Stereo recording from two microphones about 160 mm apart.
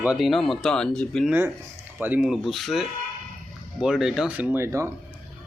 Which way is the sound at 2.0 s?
5° right (ahead or behind).